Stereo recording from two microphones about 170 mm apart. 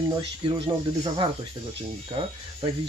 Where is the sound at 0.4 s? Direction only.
30° right (ahead or behind).